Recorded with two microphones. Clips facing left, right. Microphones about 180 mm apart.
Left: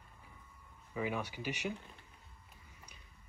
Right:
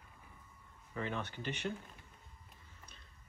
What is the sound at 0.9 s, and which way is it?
Speech, 10° left (ahead or behind).